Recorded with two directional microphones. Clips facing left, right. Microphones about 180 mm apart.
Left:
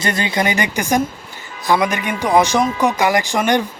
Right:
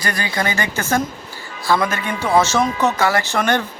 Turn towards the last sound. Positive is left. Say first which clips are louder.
# left 2 dB
turn(degrees=15)  # may be behind; listen again after turning